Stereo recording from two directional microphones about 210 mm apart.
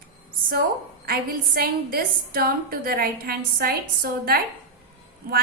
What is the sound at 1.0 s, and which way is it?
A woman's voice, 45° right (ahead or behind).